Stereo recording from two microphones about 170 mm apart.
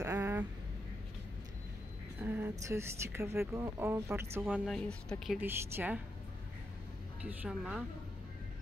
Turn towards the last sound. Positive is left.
turn(degrees=-5)  # may be behind; listen again after turning